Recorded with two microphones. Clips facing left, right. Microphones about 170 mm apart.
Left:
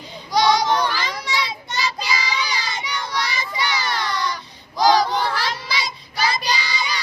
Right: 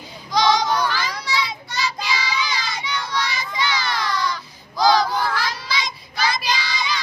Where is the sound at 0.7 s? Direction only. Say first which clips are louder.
Left 1 dB; 15° left (ahead or behind).